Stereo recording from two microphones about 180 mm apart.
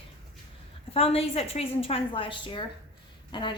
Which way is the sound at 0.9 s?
30° left (ahead or behind).